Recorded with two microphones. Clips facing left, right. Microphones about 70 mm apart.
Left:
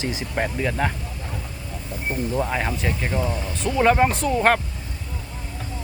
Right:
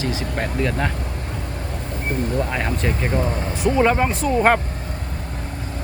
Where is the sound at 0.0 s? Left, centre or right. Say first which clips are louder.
Right 3 dB; left.